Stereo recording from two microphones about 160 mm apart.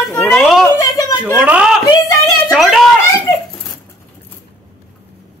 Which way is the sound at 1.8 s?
20° left (ahead or behind).